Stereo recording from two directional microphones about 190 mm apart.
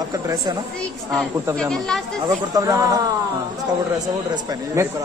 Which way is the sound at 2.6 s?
15° right (ahead or behind).